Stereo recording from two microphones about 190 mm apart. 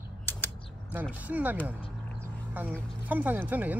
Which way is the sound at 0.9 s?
10° right (ahead or behind).